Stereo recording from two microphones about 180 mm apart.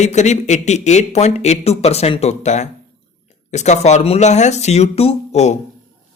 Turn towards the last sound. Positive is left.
turn(degrees=35)  # may be behind; listen again after turning